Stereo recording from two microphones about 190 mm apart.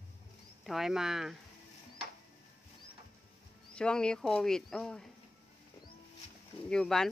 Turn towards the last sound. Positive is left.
turn(degrees=5)  # may be behind; listen again after turning